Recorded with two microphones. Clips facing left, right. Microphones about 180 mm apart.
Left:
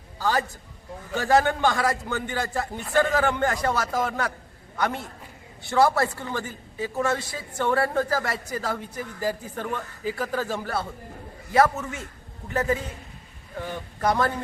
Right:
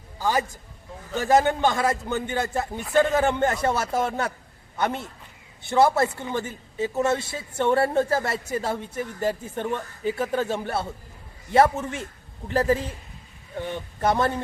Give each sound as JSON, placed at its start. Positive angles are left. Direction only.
{"t": 0.2, "sound": "a man's voice", "side_deg": -15}